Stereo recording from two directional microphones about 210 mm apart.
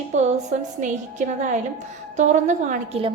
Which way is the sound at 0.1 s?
35° right (ahead or behind).